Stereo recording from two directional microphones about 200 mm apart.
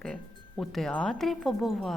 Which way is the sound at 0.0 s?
5° left (ahead or behind).